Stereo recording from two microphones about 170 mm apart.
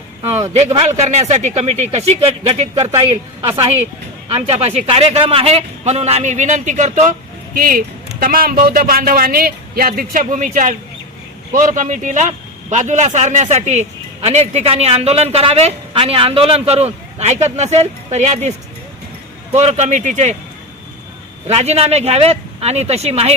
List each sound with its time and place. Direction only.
0.2 s a man's voice: 40° right (ahead or behind)
7.5 s a man's voice: 55° right (ahead or behind)
19.5 s speech: 40° right (ahead or behind)
21.4 s a man's voice: 40° right (ahead or behind)